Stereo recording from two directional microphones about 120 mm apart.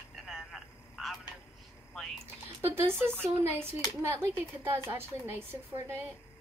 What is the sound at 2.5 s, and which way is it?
Speech, 20° right (ahead or behind).